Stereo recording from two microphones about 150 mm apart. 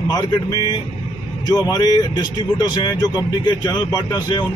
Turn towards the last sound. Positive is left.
turn(degrees=25)  # may be behind; listen again after turning